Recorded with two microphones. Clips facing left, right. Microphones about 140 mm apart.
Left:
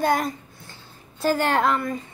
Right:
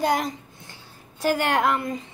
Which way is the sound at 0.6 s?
15° right (ahead or behind).